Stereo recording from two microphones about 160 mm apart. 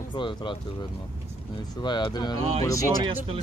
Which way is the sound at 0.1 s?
30° left (ahead or behind).